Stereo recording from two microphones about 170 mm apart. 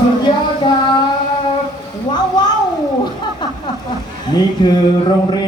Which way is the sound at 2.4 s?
25° left (ahead or behind).